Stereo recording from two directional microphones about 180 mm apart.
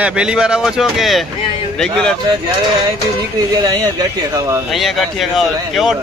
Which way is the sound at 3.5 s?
20° right (ahead or behind).